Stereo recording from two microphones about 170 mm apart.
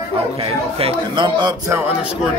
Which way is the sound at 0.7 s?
30° right (ahead or behind).